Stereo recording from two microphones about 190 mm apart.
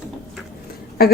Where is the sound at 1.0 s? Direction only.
55° left (ahead or behind).